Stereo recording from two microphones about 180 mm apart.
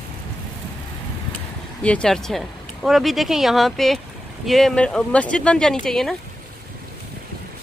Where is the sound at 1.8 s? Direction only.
5° left (ahead or behind).